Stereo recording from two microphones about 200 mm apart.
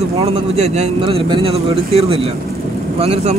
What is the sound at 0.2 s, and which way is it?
Speech, 30° right (ahead or behind).